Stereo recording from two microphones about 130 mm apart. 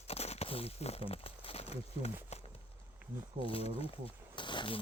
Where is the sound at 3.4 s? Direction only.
50° left (ahead or behind).